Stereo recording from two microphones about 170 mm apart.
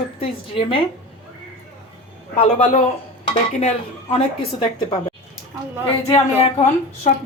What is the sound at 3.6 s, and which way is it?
A woman's voice, 35° left (ahead or behind).